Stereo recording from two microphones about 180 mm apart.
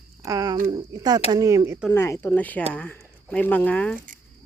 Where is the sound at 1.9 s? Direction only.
15° left (ahead or behind).